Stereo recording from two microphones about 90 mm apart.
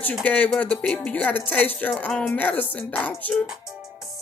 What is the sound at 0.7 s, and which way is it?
Speech, 5° left (ahead or behind).